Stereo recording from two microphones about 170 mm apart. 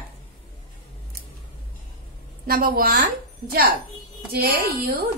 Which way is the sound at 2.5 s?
60° right (ahead or behind).